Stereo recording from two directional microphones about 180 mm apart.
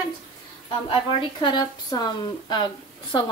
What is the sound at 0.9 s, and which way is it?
A woman's voice, 25° left (ahead or behind).